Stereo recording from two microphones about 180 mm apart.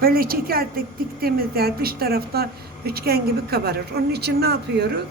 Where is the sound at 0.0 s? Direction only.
55° right (ahead or behind).